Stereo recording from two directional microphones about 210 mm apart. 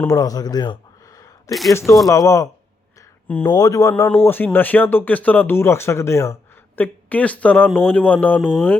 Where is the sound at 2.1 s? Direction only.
15° left (ahead or behind).